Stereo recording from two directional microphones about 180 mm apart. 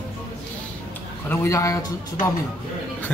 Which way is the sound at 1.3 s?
15° left (ahead or behind).